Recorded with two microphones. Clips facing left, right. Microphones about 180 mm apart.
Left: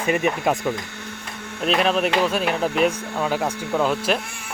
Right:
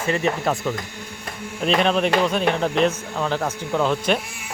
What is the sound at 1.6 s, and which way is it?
Speech, 5° left (ahead or behind).